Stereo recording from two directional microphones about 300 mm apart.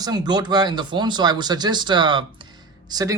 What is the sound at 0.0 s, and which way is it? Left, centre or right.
Speech, centre.